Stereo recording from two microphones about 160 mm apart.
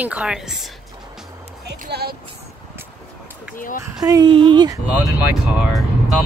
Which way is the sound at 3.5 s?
55° left (ahead or behind).